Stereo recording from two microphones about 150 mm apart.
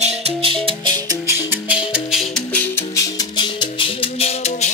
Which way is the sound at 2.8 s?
25° left (ahead or behind).